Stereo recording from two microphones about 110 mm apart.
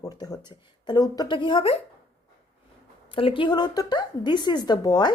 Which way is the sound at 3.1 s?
55° left (ahead or behind).